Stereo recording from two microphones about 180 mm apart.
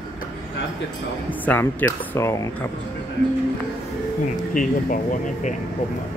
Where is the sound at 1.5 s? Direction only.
10° left (ahead or behind).